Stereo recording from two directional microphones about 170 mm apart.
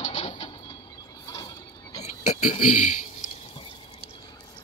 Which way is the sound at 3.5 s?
30° left (ahead or behind).